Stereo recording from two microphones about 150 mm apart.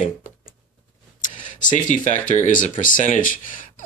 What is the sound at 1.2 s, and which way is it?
Speech, 60° left (ahead or behind).